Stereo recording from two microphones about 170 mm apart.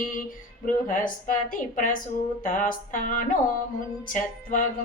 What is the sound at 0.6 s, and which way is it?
A woman's voice, 50° left (ahead or behind).